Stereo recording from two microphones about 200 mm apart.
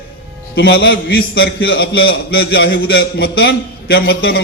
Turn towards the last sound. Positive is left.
turn(degrees=50)  # may be behind; listen again after turning